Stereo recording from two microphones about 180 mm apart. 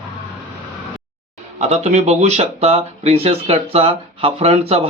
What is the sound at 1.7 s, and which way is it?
Speech, 40° right (ahead or behind).